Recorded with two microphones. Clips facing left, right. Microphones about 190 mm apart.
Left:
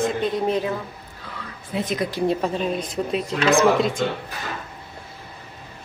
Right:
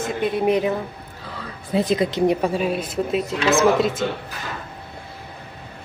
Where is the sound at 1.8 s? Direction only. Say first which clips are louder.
Right 5 dB; 35° right (ahead or behind).